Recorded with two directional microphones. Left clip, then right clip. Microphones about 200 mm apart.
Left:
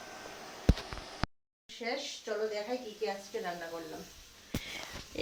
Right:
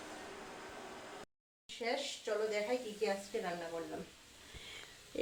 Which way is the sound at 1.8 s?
10° right (ahead or behind).